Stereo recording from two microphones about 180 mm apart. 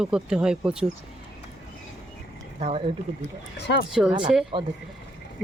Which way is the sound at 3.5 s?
70° left (ahead or behind).